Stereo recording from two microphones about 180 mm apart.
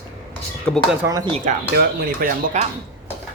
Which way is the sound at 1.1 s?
20° right (ahead or behind).